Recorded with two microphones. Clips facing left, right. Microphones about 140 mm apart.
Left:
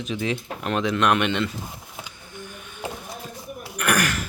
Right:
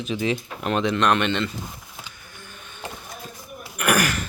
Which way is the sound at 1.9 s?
15° left (ahead or behind).